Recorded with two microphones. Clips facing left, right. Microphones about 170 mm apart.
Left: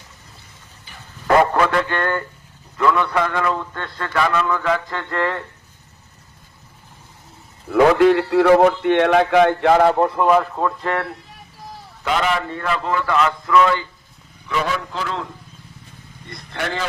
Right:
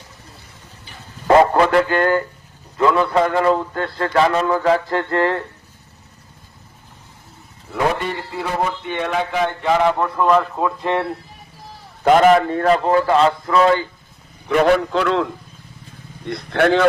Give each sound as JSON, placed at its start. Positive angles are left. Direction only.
{"t": 1.3, "sound": "a man's voice", "side_deg": -25}
{"t": 7.7, "sound": "a man's voice", "side_deg": 90}
{"t": 10.2, "sound": "speech", "side_deg": 5}
{"t": 10.8, "sound": "speech", "side_deg": -20}
{"t": 12.0, "sound": "a man's voice", "side_deg": -45}
{"t": 14.4, "sound": "a man's voice", "side_deg": -60}